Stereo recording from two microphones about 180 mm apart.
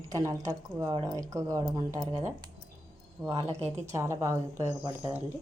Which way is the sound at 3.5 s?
35° right (ahead or behind).